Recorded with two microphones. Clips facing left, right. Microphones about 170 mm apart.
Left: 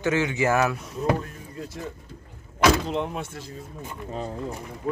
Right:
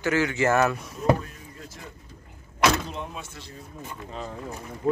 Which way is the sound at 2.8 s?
65° left (ahead or behind).